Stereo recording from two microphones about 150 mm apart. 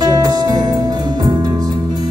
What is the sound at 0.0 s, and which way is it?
Music, 25° right (ahead or behind).